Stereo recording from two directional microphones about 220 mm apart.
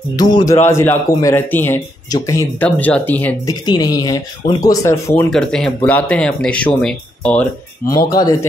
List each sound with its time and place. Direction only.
0.1 s a man's voice: 20° left (ahead or behind)
3.6 s a man's voice: 20° left (ahead or behind)
7.9 s a man's voice: 15° left (ahead or behind)